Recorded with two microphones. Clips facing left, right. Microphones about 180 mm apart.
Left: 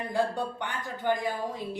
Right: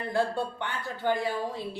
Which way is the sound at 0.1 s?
15° left (ahead or behind).